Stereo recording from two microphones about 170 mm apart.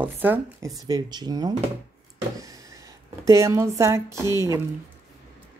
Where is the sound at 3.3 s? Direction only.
15° right (ahead or behind).